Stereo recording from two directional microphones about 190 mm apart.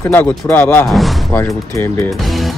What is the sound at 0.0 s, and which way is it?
Speech, 10° left (ahead or behind).